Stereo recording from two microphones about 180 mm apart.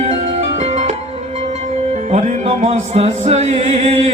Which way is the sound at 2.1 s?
40° right (ahead or behind).